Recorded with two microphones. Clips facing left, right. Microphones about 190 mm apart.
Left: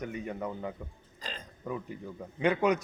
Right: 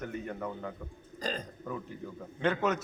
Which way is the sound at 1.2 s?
40° right (ahead or behind).